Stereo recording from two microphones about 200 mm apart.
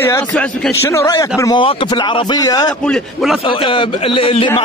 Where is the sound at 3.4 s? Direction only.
25° left (ahead or behind).